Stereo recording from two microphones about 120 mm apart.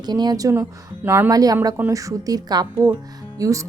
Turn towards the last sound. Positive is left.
turn(degrees=-25)  # may be behind; listen again after turning